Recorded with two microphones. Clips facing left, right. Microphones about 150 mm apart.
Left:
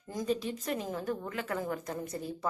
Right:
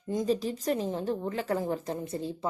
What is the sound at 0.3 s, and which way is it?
Speech, 35° right (ahead or behind).